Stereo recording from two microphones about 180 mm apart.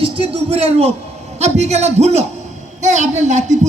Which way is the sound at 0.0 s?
30° right (ahead or behind).